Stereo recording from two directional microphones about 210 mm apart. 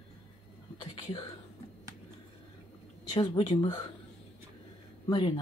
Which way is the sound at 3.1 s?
25° left (ahead or behind).